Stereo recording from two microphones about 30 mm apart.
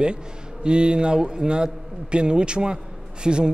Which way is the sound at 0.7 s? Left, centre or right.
Right.